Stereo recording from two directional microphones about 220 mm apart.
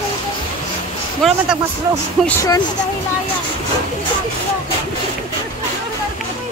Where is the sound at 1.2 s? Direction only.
Centre (ahead or behind).